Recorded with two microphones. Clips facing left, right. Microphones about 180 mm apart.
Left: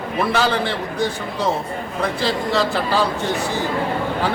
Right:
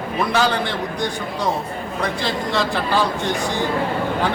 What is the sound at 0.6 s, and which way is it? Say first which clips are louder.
Speech: left 2 dB; 15° right (ahead or behind).